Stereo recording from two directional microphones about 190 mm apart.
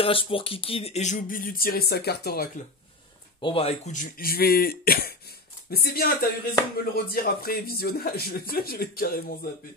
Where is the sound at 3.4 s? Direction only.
30° left (ahead or behind).